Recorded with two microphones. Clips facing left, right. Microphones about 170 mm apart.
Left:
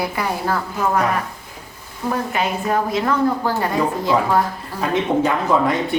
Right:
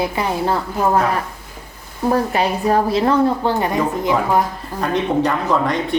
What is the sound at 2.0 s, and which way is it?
A woman's voice, 35° right (ahead or behind).